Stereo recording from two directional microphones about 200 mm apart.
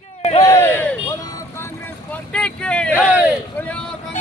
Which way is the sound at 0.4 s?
10° left (ahead or behind).